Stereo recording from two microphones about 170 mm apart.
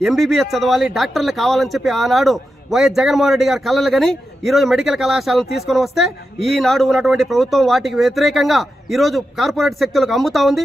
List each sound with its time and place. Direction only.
0.0 s a man's voice: centre (ahead or behind)